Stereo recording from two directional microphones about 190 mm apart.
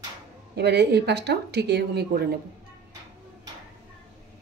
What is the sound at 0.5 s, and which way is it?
Speech, 60° right (ahead or behind).